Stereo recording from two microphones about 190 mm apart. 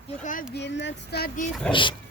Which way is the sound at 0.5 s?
65° left (ahead or behind).